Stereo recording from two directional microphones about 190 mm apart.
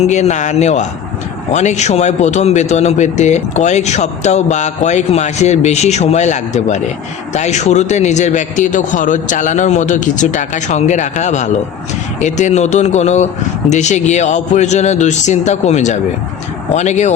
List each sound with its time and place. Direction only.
0.0 s a man's voice: 35° left (ahead or behind)